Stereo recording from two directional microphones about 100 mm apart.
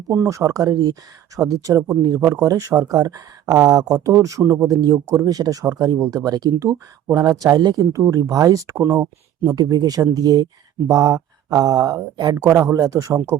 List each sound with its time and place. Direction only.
0.1 s speech: 30° right (ahead or behind)
9.6 s a man's voice: 40° right (ahead or behind)
12.5 s speech: 30° right (ahead or behind)